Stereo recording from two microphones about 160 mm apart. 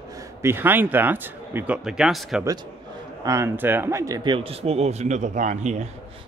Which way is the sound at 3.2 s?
15° right (ahead or behind).